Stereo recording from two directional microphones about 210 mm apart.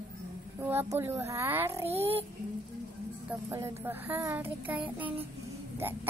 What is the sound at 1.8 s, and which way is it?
Speech, 30° right (ahead or behind).